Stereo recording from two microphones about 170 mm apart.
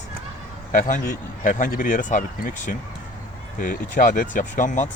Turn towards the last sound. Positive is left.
turn(degrees=45)  # may be behind; listen again after turning